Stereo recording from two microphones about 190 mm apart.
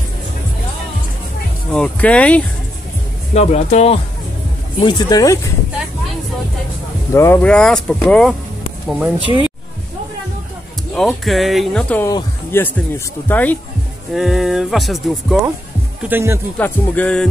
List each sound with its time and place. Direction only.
1.7 s speech: 5° left (ahead or behind)
3.3 s speech: 35° left (ahead or behind)
4.8 s speech: 20° left (ahead or behind)
7.2 s speech: 10° left (ahead or behind); by 9.1 s 5° right (ahead or behind)
11.0 s speech: centre (ahead or behind)
12.1 s speech: 15° left (ahead or behind); by 15.3 s centre (ahead or behind)
16.1 s speech: 10° right (ahead or behind)
16.5 s speech: 10° left (ahead or behind)